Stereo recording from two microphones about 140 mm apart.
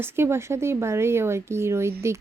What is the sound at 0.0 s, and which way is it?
Speech, 20° right (ahead or behind).